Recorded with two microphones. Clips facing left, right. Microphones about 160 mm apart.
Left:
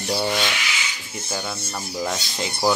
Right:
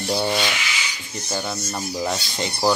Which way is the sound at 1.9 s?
Centre (ahead or behind).